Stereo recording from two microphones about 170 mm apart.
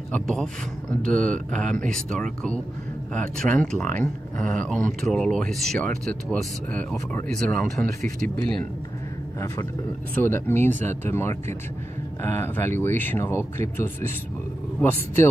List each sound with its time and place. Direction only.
0.1 s speech: 5° left (ahead or behind)
10.1 s speech: 10° left (ahead or behind)